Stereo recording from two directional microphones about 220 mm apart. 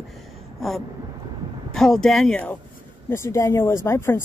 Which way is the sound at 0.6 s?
Centre (ahead or behind).